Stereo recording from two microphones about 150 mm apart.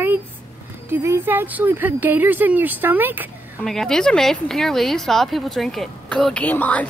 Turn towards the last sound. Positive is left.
turn(degrees=10)  # may be behind; listen again after turning